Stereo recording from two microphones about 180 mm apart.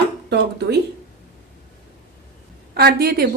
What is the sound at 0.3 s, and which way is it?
Speech, 70° right (ahead or behind).